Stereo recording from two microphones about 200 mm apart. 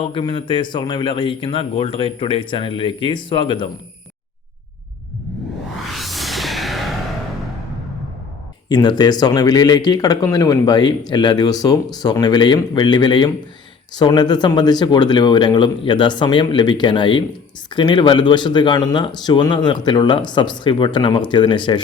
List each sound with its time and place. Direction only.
0.0 s speech: 25° left (ahead or behind)
5.9 s music: centre (ahead or behind)
8.7 s speech: 20° left (ahead or behind)